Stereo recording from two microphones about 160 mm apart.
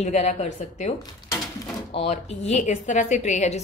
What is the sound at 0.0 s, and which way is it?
Speech, 45° left (ahead or behind).